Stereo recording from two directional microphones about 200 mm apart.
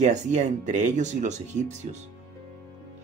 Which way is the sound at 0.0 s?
35° right (ahead or behind).